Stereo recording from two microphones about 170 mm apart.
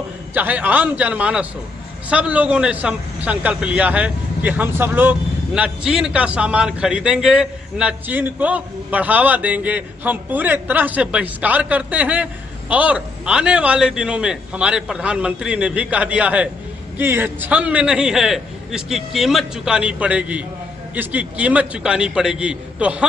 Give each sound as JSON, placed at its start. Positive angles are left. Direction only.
{"t": 0.3, "sound": "a man's voice", "side_deg": -10}